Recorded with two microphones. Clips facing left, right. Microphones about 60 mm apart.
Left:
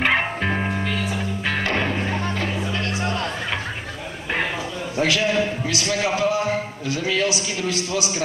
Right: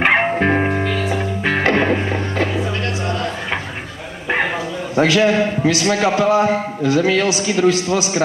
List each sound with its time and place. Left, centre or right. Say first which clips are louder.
0.0 s music: right 6 dB; right
4.9 s a man's voice: right 6 dB; right